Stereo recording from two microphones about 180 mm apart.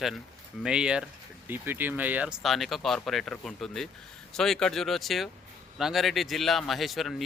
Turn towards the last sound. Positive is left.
turn(degrees=0)  # may be behind; listen again after turning